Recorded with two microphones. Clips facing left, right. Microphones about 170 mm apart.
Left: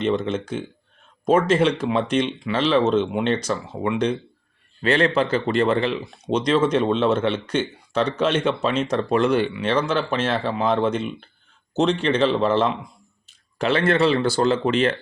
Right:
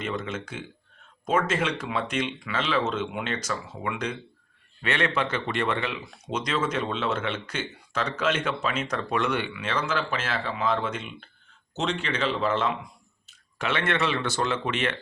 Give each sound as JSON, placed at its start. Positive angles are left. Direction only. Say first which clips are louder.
{"t": 0.0, "sound": "speech", "louder": "left 9 dB", "side_deg": 30}